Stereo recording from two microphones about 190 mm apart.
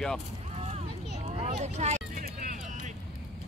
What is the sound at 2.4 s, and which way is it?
Vehicle, 45° right (ahead or behind).